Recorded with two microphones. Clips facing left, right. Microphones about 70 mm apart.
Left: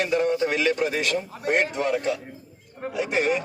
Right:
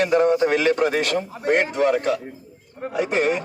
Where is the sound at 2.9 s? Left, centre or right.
Right.